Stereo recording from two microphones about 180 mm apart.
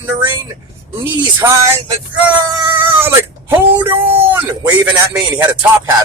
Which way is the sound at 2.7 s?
10° right (ahead or behind).